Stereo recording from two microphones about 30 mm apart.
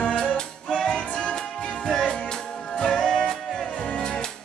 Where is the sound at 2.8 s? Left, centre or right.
Left.